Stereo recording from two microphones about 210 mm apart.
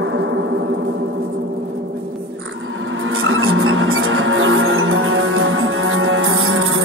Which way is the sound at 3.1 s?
75° right (ahead or behind).